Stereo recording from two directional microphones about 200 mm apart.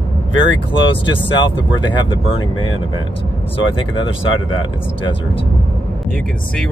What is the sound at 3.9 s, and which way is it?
Speech, 25° left (ahead or behind).